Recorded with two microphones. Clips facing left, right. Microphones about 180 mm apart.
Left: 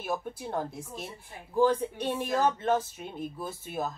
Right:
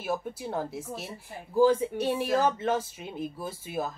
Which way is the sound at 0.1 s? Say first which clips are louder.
Right 1 dB; 5° right (ahead or behind).